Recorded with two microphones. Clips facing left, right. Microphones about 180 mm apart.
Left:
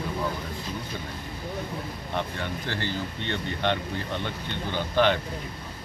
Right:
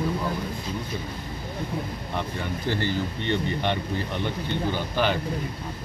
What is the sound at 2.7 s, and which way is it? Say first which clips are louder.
Speech: right 8 dB; 15° right (ahead or behind).